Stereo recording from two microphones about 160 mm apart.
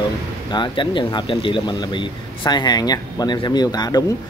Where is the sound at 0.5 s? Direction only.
30° left (ahead or behind).